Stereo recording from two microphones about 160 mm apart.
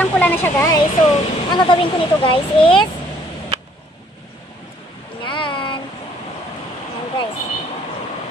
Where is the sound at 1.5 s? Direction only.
30° left (ahead or behind).